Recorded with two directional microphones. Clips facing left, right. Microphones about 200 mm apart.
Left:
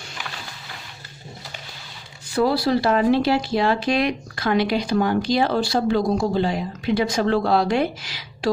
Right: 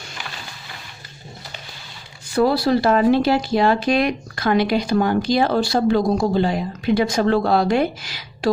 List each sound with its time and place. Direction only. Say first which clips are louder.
2.3 s speech: right 2 dB; 50° right (ahead or behind)